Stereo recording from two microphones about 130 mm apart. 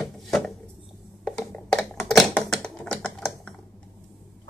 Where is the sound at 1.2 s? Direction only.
5° left (ahead or behind).